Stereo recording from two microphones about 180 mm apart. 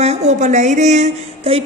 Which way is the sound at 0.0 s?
35° right (ahead or behind).